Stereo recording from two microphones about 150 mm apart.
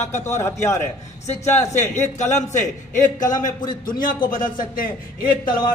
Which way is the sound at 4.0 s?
65° left (ahead or behind).